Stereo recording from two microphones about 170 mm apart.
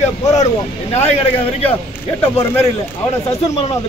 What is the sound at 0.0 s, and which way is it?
Speech, 40° left (ahead or behind).